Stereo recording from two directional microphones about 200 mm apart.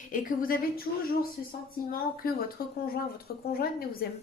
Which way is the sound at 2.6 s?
45° left (ahead or behind).